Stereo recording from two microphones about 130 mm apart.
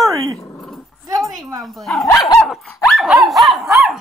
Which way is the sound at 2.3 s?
Centre (ahead or behind).